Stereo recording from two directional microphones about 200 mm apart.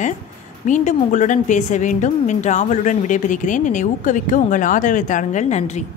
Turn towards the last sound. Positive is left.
turn(degrees=35)  # may be behind; listen again after turning